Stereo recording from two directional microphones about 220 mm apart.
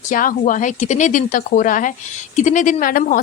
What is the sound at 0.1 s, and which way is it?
Speech, 35° left (ahead or behind).